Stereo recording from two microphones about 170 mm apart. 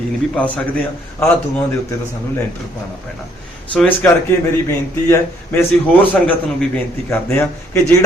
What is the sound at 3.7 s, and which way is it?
A man's voice, 10° left (ahead or behind).